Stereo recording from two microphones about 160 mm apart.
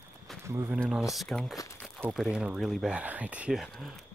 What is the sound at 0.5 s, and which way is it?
Speech, 15° right (ahead or behind).